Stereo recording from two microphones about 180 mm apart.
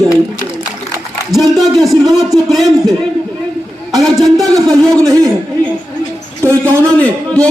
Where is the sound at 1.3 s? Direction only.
Centre (ahead or behind).